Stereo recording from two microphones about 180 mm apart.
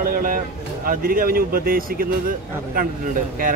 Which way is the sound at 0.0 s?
50° right (ahead or behind).